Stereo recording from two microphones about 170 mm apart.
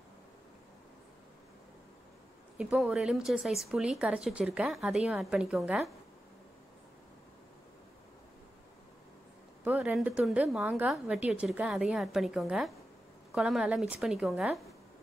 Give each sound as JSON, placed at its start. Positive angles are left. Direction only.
{"t": 2.5, "sound": "speech", "side_deg": -5}
{"t": 9.7, "sound": "speech", "side_deg": -10}